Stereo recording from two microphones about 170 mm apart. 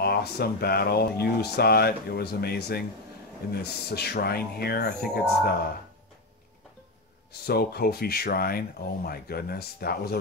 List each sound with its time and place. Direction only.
0.0 s speech: 70° left (ahead or behind)
7.4 s speech: 65° left (ahead or behind)